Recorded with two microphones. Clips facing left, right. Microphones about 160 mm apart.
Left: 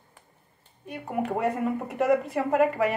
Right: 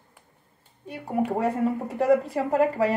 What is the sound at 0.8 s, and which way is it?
Speech, 30° right (ahead or behind).